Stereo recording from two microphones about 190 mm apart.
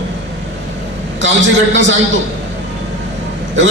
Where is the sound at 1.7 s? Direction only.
75° right (ahead or behind).